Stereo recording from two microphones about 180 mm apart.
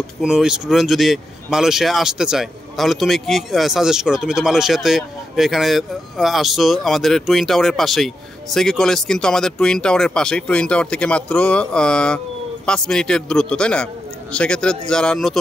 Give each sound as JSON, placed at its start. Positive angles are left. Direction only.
{"t": 0.2, "sound": "speech", "side_deg": -5}